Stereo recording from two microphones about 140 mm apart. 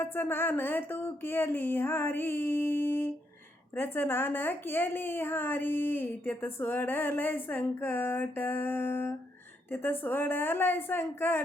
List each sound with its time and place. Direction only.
0.0 s a woman's voice: 15° left (ahead or behind)